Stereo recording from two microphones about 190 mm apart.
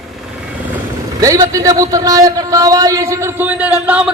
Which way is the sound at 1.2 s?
15° right (ahead or behind).